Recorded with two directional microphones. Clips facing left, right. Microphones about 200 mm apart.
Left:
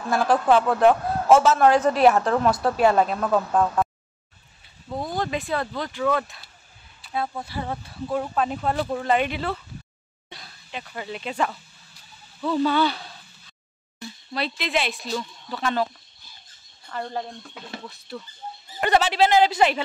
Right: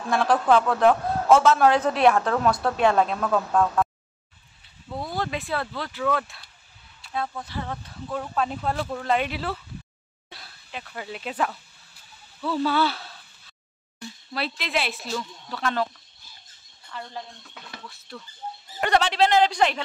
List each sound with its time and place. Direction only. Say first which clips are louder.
0.1 s a man's voice: left 1 dB; 5° left (ahead or behind)
4.9 s speech: left 2 dB; 20° left (ahead or behind)
5.2 s a man's voice: left 2 dB; centre (ahead or behind)
7.4 s a man's voice: left 2 dB; 15° left (ahead or behind)
16.9 s speech: left 7 dB; 50° left (ahead or behind)
17.6 s speech: left 5 dB; 30° left (ahead or behind)
18.8 s a man's voice: left 1 dB; 5° left (ahead or behind)